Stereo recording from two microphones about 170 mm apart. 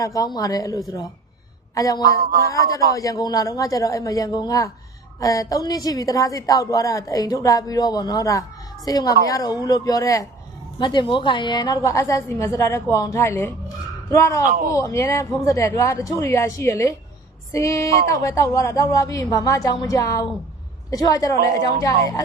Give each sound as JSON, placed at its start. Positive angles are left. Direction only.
{"t": 0.0, "sound": "a woman's voice", "side_deg": 20}